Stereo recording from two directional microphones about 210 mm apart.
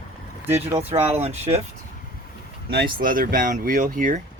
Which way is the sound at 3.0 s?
40° right (ahead or behind).